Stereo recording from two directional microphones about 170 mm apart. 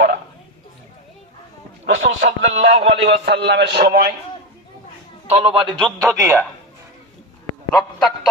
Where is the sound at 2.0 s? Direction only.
45° right (ahead or behind).